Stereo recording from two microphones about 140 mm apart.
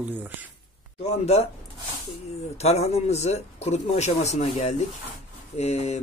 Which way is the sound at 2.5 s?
50° left (ahead or behind).